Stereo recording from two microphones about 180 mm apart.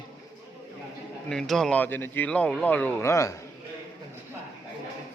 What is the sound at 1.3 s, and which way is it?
Speech, centre (ahead or behind).